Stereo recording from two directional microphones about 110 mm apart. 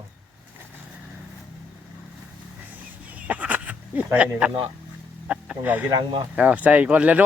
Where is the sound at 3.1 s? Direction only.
10° right (ahead or behind).